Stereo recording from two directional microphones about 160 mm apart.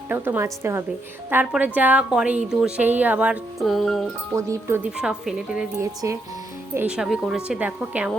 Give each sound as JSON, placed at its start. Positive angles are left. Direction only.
{"t": 0.1, "sound": "a woman's voice", "side_deg": -15}
{"t": 4.4, "sound": "speech", "side_deg": -20}
{"t": 4.8, "sound": "speech", "side_deg": -5}
{"t": 5.8, "sound": "speech", "side_deg": -20}
{"t": 6.7, "sound": "a woman's voice", "side_deg": -5}